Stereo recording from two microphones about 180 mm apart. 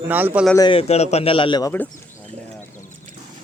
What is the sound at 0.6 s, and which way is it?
A man's voice, 30° left (ahead or behind).